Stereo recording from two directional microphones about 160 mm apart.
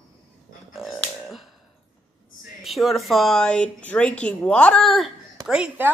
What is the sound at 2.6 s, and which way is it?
A woman's voice, centre (ahead or behind).